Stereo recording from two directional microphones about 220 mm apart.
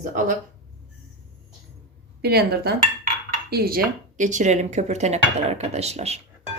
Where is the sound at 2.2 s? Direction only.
45° right (ahead or behind); by 6.2 s 30° right (ahead or behind).